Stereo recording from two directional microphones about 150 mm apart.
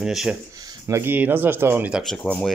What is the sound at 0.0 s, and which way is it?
Speech, 5° right (ahead or behind).